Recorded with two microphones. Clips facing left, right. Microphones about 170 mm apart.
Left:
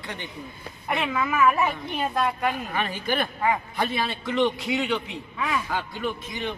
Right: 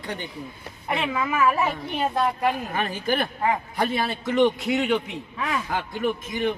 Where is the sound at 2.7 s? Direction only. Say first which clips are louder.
Right 2 dB; 40° right (ahead or behind).